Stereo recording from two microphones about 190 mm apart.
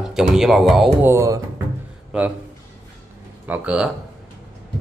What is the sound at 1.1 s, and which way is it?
Speech, 15° right (ahead or behind).